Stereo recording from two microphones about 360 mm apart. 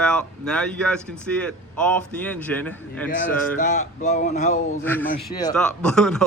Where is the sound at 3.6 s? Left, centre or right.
Centre.